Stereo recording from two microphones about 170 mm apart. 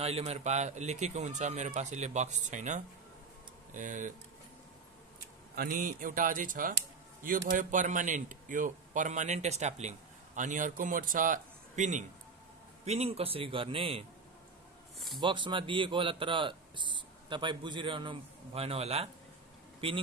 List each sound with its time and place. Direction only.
0.0 s a man's voice: 35° right (ahead or behind)
5.6 s a man's voice: 50° right (ahead or behind); by 14.0 s 30° right (ahead or behind)
15.1 s a man's voice: 30° right (ahead or behind)